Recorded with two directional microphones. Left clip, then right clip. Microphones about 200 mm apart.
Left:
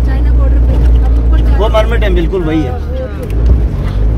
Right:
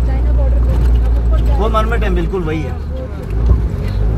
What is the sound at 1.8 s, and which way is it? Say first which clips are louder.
Speech: left 4 dB; 25° left (ahead or behind).